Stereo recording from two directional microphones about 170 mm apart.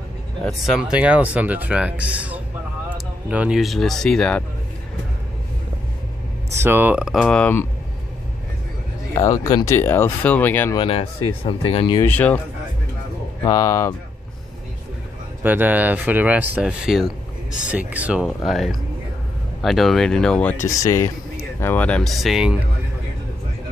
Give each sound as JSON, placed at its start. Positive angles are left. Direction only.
{"t": 0.7, "sound": "speech", "side_deg": -5}
{"t": 6.6, "sound": "speech", "side_deg": -10}
{"t": 7.2, "sound": "speech", "side_deg": 10}
{"t": 9.1, "sound": "speech", "side_deg": 20}
{"t": 10.8, "sound": "speech", "side_deg": 30}
{"t": 12.1, "sound": "speech", "side_deg": 10}
{"t": 13.4, "sound": "speech", "side_deg": 20}
{"t": 15.4, "sound": "speech", "side_deg": -10}
{"t": 20.7, "sound": "speech", "side_deg": 20}